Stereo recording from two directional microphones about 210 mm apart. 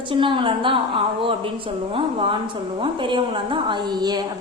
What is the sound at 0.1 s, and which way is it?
Speech, 25° right (ahead or behind).